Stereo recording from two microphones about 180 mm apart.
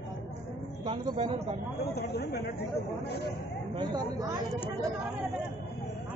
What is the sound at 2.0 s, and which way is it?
Speech, 60° left (ahead or behind).